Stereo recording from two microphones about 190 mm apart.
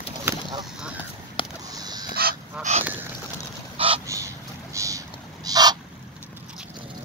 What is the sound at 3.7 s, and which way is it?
Duck, 30° right (ahead or behind).